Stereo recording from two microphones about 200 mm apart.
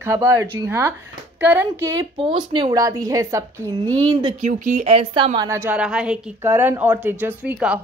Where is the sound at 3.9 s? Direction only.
25° right (ahead or behind).